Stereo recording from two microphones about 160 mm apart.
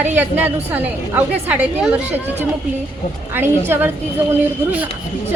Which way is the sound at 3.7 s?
10° right (ahead or behind).